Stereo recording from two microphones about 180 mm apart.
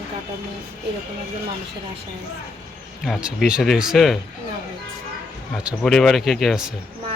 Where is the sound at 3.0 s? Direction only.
5° right (ahead or behind).